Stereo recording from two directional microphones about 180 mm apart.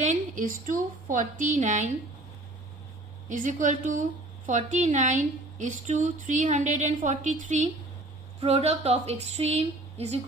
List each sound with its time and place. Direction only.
0.0 s a woman's voice: 45° right (ahead or behind)
3.3 s a woman's voice: 45° right (ahead or behind)